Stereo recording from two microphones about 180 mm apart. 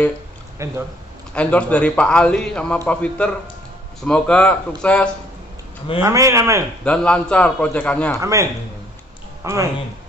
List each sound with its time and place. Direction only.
0.6 s a man's voice: 15° right (ahead or behind)
1.3 s a man's voice: 5° left (ahead or behind)
6.0 s a man's voice: 15° right (ahead or behind)
6.8 s a man's voice: 5° left (ahead or behind)
8.2 s a man's voice: 15° right (ahead or behind)